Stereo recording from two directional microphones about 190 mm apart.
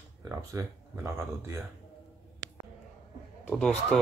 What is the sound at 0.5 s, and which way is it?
Speech, 15° right (ahead or behind).